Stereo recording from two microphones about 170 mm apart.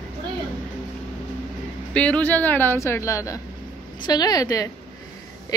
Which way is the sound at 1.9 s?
5° left (ahead or behind).